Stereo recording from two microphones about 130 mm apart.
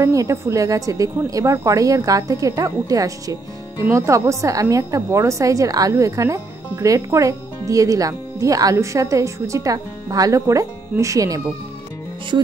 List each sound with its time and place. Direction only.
0.0 s a woman's voice: 25° right (ahead or behind)